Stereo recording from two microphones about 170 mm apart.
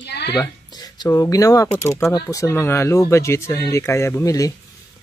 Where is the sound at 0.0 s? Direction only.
80° left.